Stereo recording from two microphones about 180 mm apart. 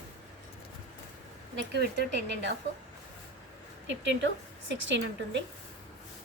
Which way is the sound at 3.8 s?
90° right.